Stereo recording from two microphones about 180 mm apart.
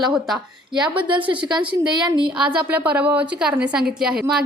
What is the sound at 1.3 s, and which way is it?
Speech, 25° right (ahead or behind).